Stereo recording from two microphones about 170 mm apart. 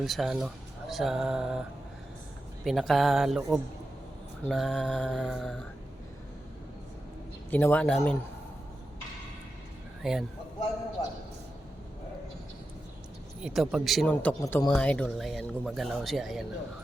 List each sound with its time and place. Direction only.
0.0 s speech: centre (ahead or behind)
2.6 s speech: centre (ahead or behind)
7.5 s a man's voice: 10° left (ahead or behind)
10.0 s speech: centre (ahead or behind)
13.4 s speech: 5° right (ahead or behind)
14.4 s speech: 20° left (ahead or behind)
14.7 s speech: 5° left (ahead or behind)